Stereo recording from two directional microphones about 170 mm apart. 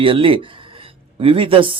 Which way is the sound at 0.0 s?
30° right (ahead or behind).